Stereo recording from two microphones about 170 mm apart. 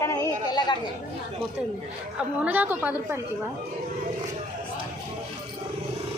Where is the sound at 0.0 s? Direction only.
20° left (ahead or behind).